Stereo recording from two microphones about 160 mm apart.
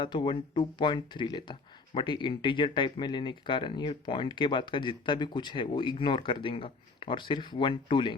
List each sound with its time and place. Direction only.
0.0 s speech: 30° left (ahead or behind)